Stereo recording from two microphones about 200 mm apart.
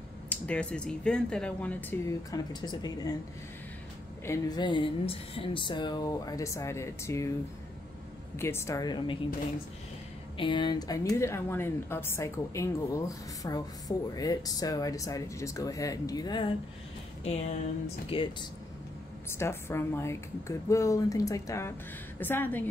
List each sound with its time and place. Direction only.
0.3 s speech: 5° left (ahead or behind)
4.3 s speech: 20° left (ahead or behind)
8.4 s speech: 10° left (ahead or behind)
10.3 s speech: 25° left (ahead or behind)
17.8 s speech: 25° left (ahead or behind)
19.3 s speech: 10° left (ahead or behind)